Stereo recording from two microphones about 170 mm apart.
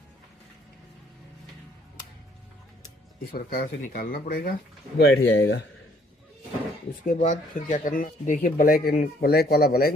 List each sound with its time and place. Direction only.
2.8 s speech: 60° left (ahead or behind); by 5.5 s 85° left
7.1 s speech: 50° left (ahead or behind)